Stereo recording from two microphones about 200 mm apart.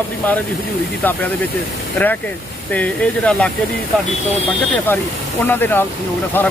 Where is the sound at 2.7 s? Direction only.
5° left (ahead or behind).